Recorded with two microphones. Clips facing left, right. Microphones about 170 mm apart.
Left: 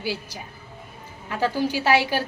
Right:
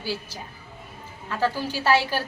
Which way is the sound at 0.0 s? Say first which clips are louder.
Left 2 dB; 15° left (ahead or behind).